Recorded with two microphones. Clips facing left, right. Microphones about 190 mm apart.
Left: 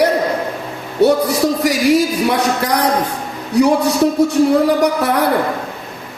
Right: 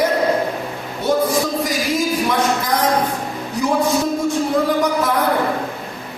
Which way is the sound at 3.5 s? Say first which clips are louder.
Left 5 dB; 70° left (ahead or behind).